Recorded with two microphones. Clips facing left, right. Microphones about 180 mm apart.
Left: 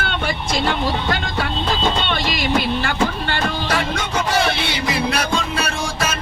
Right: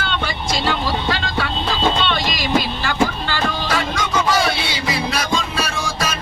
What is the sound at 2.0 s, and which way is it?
Music, 55° left (ahead or behind).